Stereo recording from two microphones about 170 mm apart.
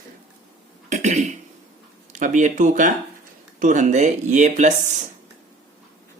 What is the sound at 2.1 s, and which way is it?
Speech, 45° right (ahead or behind).